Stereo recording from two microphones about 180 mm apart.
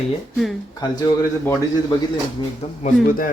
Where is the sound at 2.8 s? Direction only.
50° left (ahead or behind).